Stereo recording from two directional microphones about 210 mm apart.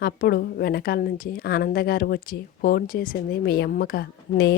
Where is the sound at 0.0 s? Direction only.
50° left (ahead or behind).